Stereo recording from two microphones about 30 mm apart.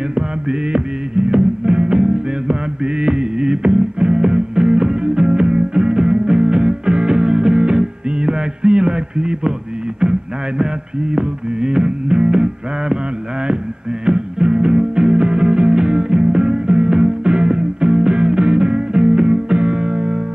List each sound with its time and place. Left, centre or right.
0.1 s music: right
10.6 s music: right
14.0 s music: right